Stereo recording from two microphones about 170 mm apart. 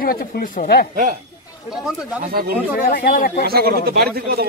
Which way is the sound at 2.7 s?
60° left (ahead or behind).